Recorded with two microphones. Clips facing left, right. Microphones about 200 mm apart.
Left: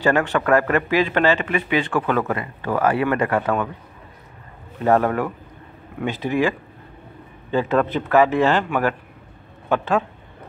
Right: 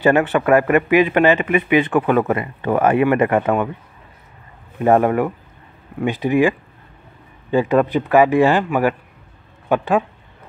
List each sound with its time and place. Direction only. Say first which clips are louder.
0.0 s speech: right 4 dB; 15° right (ahead or behind)
4.7 s speech: right 3 dB; 15° right (ahead or behind)
7.5 s speech: right 4 dB; 15° right (ahead or behind)